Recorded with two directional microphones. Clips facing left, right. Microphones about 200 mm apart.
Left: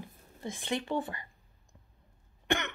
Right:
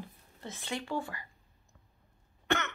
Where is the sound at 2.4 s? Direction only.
15° left (ahead or behind).